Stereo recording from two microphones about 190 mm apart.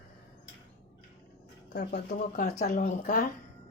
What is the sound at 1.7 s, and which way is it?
Speech, 60° left (ahead or behind).